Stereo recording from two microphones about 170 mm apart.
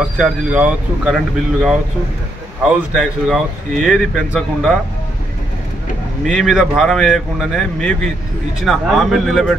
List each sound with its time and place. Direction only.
0.2 s speech: 10° right (ahead or behind)
6.2 s speech: centre (ahead or behind)